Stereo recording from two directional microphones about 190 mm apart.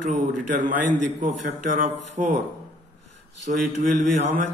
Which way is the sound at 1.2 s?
40° right (ahead or behind).